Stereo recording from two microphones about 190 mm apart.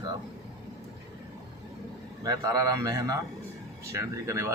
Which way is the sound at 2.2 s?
20° right (ahead or behind).